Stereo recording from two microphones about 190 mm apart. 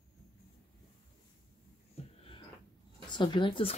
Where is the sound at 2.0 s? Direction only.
35° left (ahead or behind).